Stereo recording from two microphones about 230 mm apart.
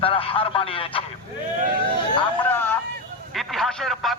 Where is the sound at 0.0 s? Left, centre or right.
Left.